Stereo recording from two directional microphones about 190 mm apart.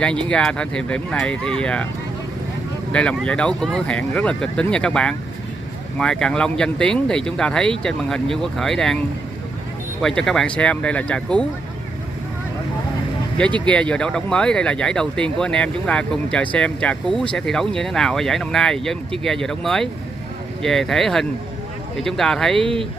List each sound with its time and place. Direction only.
0.3 s speech: 5° left (ahead or behind)
2.9 s speech: 5° left (ahead or behind)
10.0 s speech: 5° left (ahead or behind)
13.7 s speech: 5° left (ahead or behind)
22.6 s speech: 30° right (ahead or behind)